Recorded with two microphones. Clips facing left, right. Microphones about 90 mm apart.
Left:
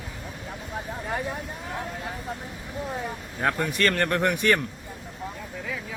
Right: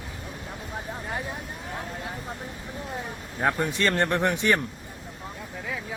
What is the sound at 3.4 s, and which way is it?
Speech, 5° right (ahead or behind).